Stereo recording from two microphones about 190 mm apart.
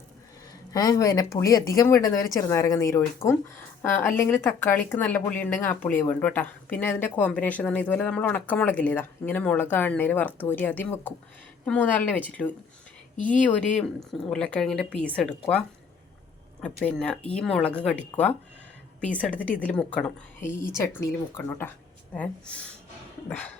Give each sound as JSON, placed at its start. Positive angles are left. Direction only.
{"t": 0.7, "sound": "speech", "side_deg": 20}
{"t": 3.2, "sound": "speech", "side_deg": 30}
{"t": 4.0, "sound": "speech", "side_deg": 15}
{"t": 16.6, "sound": "speech", "side_deg": 5}